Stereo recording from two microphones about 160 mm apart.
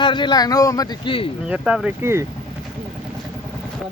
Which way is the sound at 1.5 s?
5° right (ahead or behind).